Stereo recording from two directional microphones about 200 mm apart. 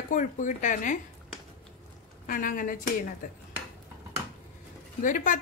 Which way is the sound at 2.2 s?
40° left (ahead or behind).